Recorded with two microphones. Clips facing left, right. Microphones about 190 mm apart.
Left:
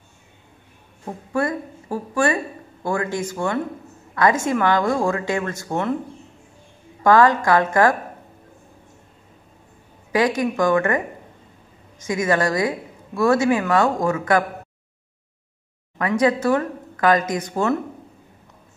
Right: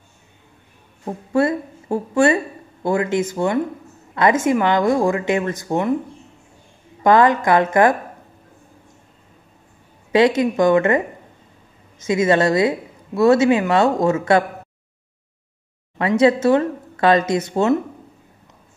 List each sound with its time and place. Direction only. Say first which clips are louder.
1.0 s a woman's voice: right 5 dB; 25° right (ahead or behind)
7.0 s a woman's voice: right 1 dB; 20° right (ahead or behind)
10.1 s a woman's voice: right 5 dB; 25° right (ahead or behind)
12.1 s a woman's voice: right 4 dB; 25° right (ahead or behind)
16.0 s a woman's voice: right 4 dB; 25° right (ahead or behind)